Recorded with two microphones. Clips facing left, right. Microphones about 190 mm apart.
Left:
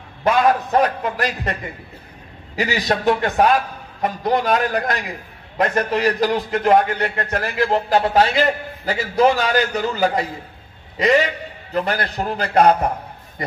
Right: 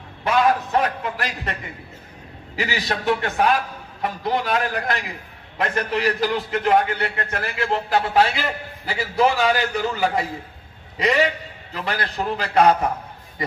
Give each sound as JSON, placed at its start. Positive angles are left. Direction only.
{"t": 0.2, "sound": "a man's voice", "side_deg": 40}
{"t": 11.7, "sound": "a man's voice", "side_deg": 45}